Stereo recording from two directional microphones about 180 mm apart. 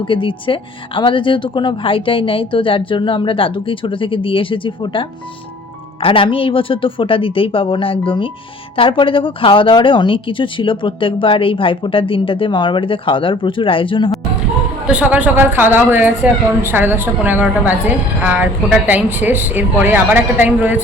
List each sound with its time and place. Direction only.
0.1 s speech: 30° left (ahead or behind)
14.8 s speech: 10° right (ahead or behind)